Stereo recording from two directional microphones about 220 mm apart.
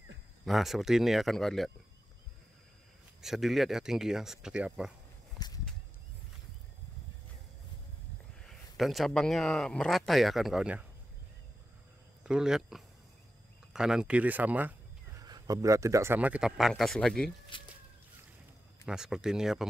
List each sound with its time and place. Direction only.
0.5 s a man's voice: centre (ahead or behind)
3.2 s a man's voice: centre (ahead or behind)
5.4 s a sound: 20° left (ahead or behind)
8.4 s a man's voice: centre (ahead or behind)
12.2 s a man's voice: 5° right (ahead or behind)
17.5 s chicken: 20° left (ahead or behind)
18.9 s a man's voice: 5° right (ahead or behind)